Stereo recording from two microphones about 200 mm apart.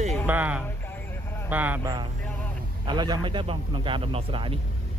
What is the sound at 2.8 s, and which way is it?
A man's voice, 20° right (ahead or behind).